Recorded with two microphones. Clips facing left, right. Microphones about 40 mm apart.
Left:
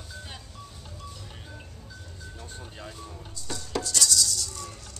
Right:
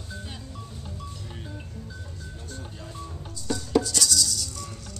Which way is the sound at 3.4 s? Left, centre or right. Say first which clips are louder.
Right 8 dB; centre.